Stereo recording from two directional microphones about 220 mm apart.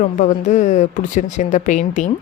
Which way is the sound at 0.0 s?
35° left (ahead or behind).